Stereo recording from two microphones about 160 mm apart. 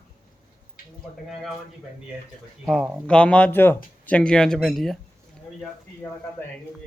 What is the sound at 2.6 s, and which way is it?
Speech, 5° right (ahead or behind).